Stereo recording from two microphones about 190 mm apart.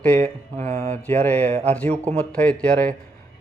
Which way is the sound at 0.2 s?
40° right (ahead or behind).